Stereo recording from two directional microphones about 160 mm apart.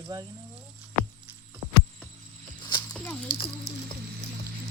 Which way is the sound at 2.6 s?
30° left (ahead or behind).